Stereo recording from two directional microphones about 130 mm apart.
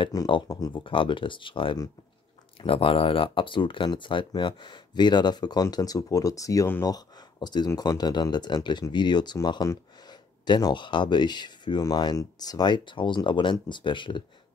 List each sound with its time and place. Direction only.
0.3 s speech: 30° left (ahead or behind)
0.8 s speech: 40° left (ahead or behind)